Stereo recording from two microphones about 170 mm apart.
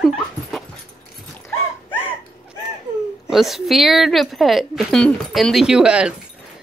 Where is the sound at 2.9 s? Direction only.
25° right (ahead or behind).